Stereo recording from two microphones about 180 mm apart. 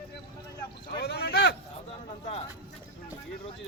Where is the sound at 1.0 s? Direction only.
65° left (ahead or behind).